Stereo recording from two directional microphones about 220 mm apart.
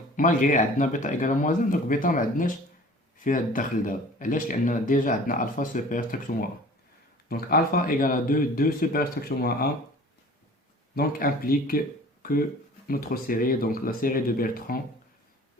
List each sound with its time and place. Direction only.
0.2 s speech: 35° left (ahead or behind)
10.9 s speech: 40° left (ahead or behind)